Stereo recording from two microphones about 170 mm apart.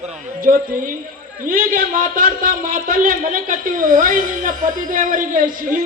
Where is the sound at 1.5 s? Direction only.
55° right (ahead or behind).